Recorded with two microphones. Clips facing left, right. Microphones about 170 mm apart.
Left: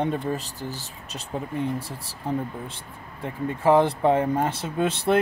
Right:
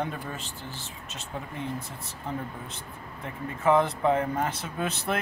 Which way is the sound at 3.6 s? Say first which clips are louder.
Left 4 dB; 30° left (ahead or behind).